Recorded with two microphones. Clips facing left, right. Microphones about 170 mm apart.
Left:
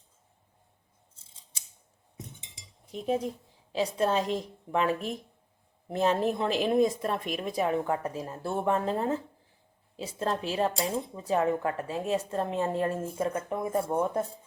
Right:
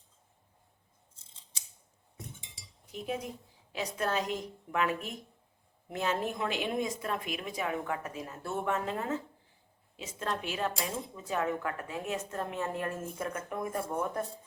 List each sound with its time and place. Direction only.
2.4 s cutlery: 25° left (ahead or behind)
3.7 s speech: 30° left (ahead or behind)